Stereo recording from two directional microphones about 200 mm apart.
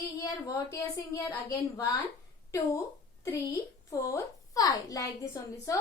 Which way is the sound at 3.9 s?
15° left (ahead or behind).